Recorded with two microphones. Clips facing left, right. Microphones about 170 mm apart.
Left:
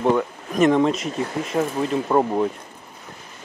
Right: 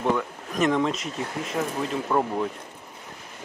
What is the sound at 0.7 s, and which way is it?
Speech, 30° left (ahead or behind).